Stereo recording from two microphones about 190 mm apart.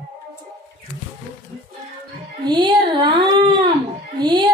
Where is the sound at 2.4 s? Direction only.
25° right (ahead or behind).